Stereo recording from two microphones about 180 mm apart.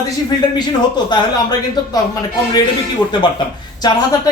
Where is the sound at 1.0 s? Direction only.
20° left (ahead or behind).